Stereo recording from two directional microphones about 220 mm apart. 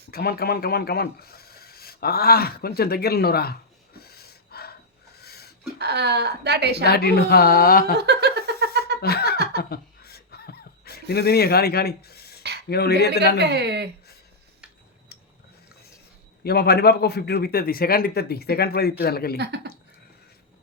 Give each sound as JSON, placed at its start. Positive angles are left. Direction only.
{"t": 0.1, "sound": "speech", "side_deg": 45}
{"t": 4.0, "sound": "a sound", "side_deg": 45}
{"t": 5.8, "sound": "speech", "side_deg": -50}
{"t": 6.8, "sound": "speech", "side_deg": 45}
{"t": 7.9, "sound": "a sound", "side_deg": -50}
{"t": 9.0, "sound": "snicker", "side_deg": 45}
{"t": 9.6, "sound": "a sound", "side_deg": 45}
{"t": 12.6, "sound": "speech", "side_deg": 45}
{"t": 13.4, "sound": "speech", "side_deg": -50}
{"t": 16.4, "sound": "speech", "side_deg": 45}